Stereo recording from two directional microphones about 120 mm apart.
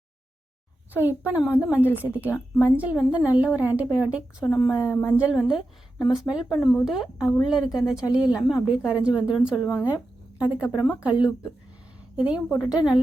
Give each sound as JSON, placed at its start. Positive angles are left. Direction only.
{"t": 0.9, "sound": "a woman's voice", "side_deg": -15}
{"t": 1.6, "sound": "a woman's voice", "side_deg": 20}
{"t": 2.0, "sound": "a woman's voice", "side_deg": -15}
{"t": 4.7, "sound": "a woman's voice", "side_deg": 25}
{"t": 5.1, "sound": "a woman's voice", "side_deg": 0}